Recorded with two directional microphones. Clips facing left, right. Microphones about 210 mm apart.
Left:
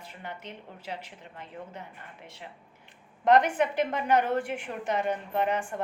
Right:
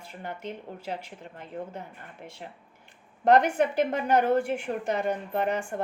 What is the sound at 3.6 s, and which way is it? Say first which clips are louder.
A woman's voice: right 2 dB; 40° right (ahead or behind).